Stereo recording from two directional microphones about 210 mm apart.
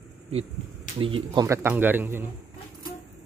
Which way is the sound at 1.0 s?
25° right (ahead or behind).